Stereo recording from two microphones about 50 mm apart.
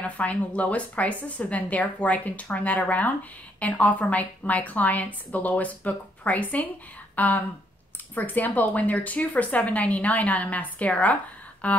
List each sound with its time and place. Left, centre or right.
0.0 s speech: left